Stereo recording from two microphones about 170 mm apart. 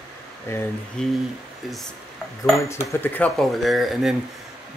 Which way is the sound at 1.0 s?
5° left (ahead or behind).